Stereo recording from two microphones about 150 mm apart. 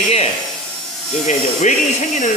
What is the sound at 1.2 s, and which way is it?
Speech, 55° left (ahead or behind).